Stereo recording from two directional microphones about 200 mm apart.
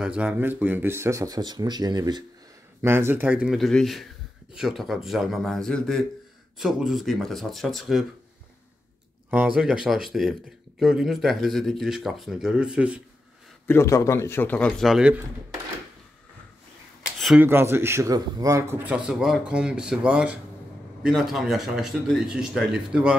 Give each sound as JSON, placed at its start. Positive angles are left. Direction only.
{"t": 0.0, "sound": "speech", "side_deg": -5}
{"t": 9.6, "sound": "speech", "side_deg": 0}
{"t": 13.7, "sound": "speech", "side_deg": 15}
{"t": 17.2, "sound": "a sound", "side_deg": 0}
{"t": 17.5, "sound": "speech", "side_deg": -10}